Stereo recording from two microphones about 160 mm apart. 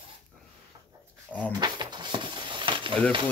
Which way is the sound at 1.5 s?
25° right (ahead or behind).